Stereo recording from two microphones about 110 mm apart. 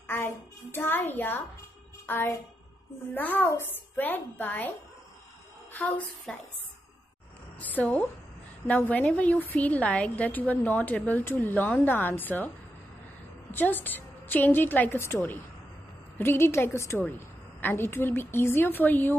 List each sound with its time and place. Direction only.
0.0 s a child's voice: 20° left (ahead or behind)
7.6 s a woman's voice: 15° left (ahead or behind)
13.5 s a woman's voice: 15° left (ahead or behind)